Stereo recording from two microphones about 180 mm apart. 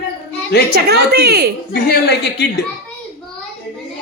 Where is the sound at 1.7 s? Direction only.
65° left (ahead or behind).